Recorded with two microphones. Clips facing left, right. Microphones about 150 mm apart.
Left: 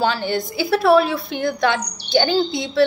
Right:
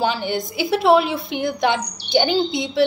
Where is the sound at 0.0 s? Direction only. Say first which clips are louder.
Left 1 dB; 15° right (ahead or behind).